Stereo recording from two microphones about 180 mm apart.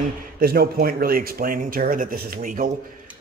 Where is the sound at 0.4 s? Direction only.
55° right (ahead or behind).